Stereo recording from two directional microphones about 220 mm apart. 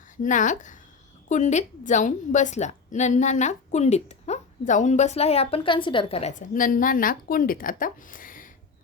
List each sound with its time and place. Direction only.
0.2 s a woman's voice: 35° left (ahead or behind)